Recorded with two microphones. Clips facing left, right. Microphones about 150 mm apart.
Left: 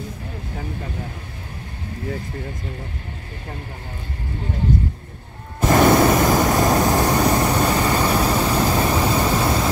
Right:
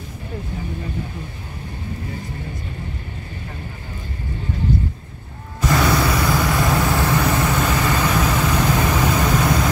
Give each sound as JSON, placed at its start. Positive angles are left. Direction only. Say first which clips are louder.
{"t": 5.7, "sound": "vehicle", "louder": "left 5 dB", "side_deg": 45}